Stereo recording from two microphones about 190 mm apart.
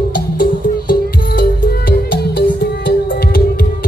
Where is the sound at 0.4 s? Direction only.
45° left (ahead or behind).